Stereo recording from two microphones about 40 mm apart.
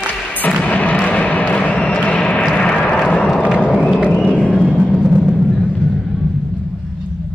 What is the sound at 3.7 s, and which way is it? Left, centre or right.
Music, centre.